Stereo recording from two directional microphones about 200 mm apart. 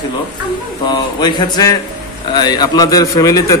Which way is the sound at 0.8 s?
20° left (ahead or behind).